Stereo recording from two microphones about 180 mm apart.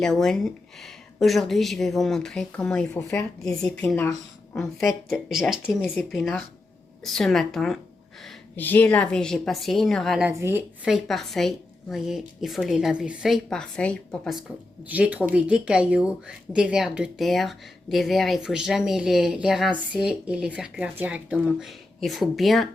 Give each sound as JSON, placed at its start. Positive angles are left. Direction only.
{"t": 0.0, "sound": "a woman's voice", "side_deg": 0}
{"t": 3.0, "sound": "speech", "side_deg": 15}
{"t": 3.4, "sound": "a woman's voice", "side_deg": 5}
{"t": 14.8, "sound": "a woman's voice", "side_deg": -10}